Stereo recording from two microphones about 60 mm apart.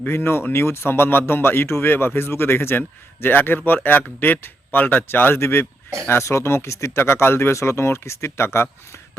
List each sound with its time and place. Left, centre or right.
0.1 s speech: left